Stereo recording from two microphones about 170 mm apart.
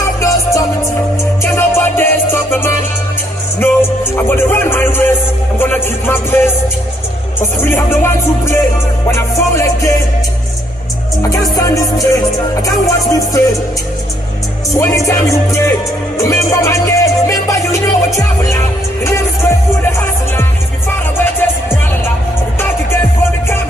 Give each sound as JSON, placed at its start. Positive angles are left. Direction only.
{"t": 0.2, "sound": "music", "side_deg": 20}
{"t": 3.5, "sound": "music", "side_deg": 15}
{"t": 7.6, "sound": "music", "side_deg": 15}
{"t": 11.5, "sound": "music", "side_deg": 20}
{"t": 14.8, "sound": "music", "side_deg": 20}
{"t": 21.2, "sound": "music", "side_deg": 15}